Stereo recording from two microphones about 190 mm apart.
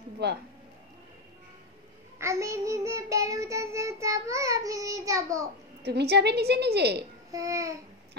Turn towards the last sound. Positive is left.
turn(degrees=-15)  # may be behind; listen again after turning